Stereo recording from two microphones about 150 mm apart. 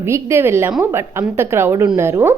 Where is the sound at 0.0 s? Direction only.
15° right (ahead or behind).